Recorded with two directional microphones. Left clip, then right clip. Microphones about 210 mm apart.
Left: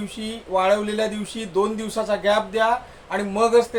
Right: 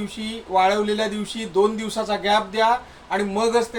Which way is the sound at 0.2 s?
15° left (ahead or behind).